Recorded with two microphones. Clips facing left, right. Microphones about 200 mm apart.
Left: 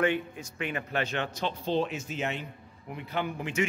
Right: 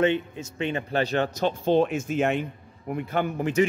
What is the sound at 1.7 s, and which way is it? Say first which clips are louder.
A man's voice: right 8 dB; 50° right (ahead or behind).